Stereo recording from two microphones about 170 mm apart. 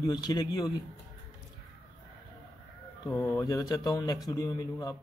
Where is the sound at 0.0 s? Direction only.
25° left (ahead or behind).